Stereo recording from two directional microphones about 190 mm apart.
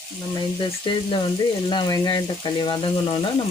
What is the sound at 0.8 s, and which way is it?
Speech, 25° left (ahead or behind).